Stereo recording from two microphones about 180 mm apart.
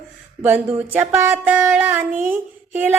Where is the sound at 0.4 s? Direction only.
10° right (ahead or behind).